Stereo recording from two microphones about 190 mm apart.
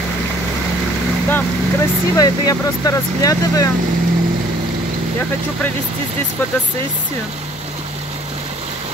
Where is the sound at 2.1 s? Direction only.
20° left (ahead or behind).